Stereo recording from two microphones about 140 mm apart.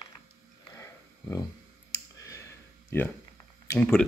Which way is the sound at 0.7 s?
20° left (ahead or behind).